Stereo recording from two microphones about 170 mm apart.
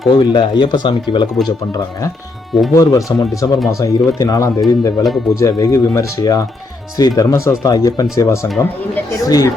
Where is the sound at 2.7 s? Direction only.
20° left (ahead or behind).